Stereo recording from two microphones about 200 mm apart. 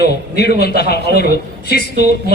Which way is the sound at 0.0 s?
55° left (ahead or behind).